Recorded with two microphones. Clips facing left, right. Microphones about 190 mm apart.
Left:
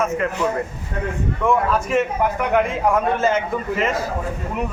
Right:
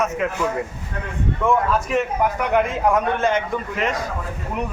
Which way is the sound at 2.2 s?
Centre (ahead or behind).